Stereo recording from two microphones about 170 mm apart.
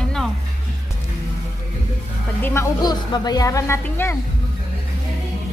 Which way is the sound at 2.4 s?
15° left (ahead or behind).